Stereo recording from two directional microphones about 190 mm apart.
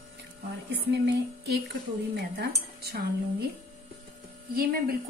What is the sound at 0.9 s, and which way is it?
Speech, 60° right (ahead or behind).